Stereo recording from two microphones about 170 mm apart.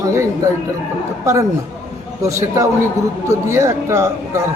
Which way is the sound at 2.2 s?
20° right (ahead or behind).